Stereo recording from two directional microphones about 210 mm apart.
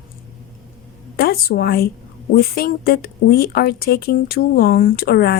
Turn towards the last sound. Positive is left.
turn(degrees=45)  # may be behind; listen again after turning